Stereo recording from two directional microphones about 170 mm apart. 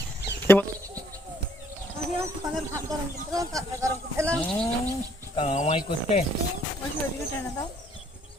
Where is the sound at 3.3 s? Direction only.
20° right (ahead or behind).